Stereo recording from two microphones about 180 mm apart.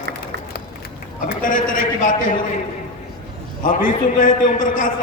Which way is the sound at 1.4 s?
50° left (ahead or behind).